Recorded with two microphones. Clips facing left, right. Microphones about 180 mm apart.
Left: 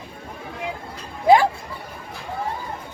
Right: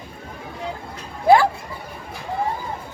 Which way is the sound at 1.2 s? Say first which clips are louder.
Even; 15° left (ahead or behind).